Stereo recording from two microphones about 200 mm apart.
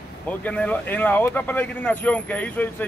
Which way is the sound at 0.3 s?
5° left (ahead or behind).